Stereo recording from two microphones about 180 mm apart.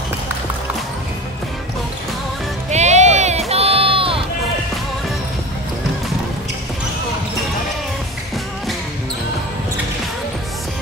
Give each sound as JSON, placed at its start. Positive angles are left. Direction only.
{"t": 2.7, "sound": "music", "side_deg": -40}